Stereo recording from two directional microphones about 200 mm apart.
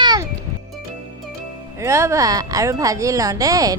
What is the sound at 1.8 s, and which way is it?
Speech, 15° right (ahead or behind).